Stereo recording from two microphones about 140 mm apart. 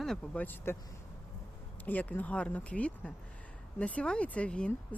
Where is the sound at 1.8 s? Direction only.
10° left (ahead or behind).